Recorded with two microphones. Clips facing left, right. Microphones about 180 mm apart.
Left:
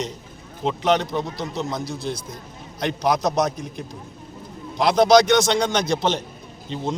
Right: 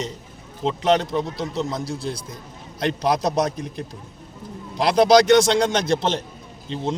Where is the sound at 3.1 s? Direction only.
30° right (ahead or behind).